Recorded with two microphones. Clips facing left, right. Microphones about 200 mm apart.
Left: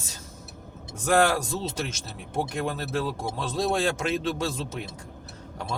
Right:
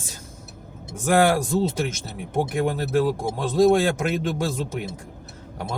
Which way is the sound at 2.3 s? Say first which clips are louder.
Right 6 dB; 15° right (ahead or behind).